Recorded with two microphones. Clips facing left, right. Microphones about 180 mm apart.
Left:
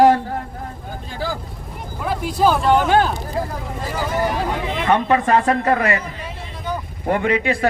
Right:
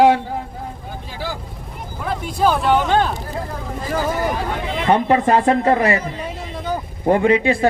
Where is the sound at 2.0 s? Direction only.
5° left (ahead or behind).